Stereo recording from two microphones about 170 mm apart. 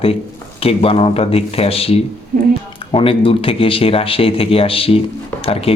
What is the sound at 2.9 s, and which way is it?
Speech, 30° left (ahead or behind).